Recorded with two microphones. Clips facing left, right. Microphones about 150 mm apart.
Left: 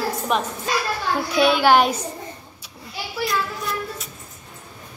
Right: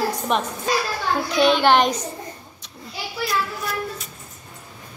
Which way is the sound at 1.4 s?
5° left (ahead or behind).